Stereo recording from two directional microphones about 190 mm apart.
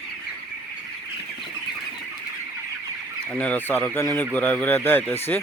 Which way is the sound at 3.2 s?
5° left (ahead or behind).